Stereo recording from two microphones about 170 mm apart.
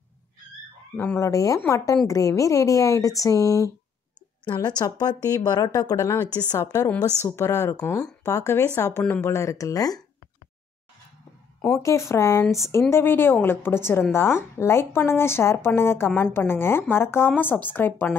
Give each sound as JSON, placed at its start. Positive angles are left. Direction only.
{"t": 0.9, "sound": "a woman's voice", "side_deg": 15}
{"t": 11.8, "sound": "a woman's voice", "side_deg": 15}
{"t": 12.4, "sound": "speech", "side_deg": 0}
{"t": 12.9, "sound": "a woman's voice", "side_deg": 15}